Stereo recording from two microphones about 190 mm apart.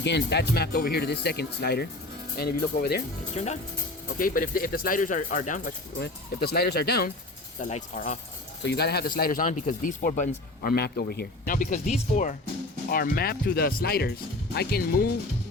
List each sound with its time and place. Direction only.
0.0 s speech: 65° left (ahead or behind)
3.3 s speech: 35° left (ahead or behind)
4.2 s speech: 45° left (ahead or behind)
6.0 s speech: 55° left (ahead or behind)
7.6 s speech: 45° left (ahead or behind)
8.6 s speech: 60° left (ahead or behind); by 12.4 s 40° left (ahead or behind)
12.9 s speech: 50° left (ahead or behind)